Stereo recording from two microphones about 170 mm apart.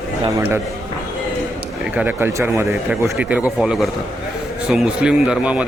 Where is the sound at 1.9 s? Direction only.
10° right (ahead or behind).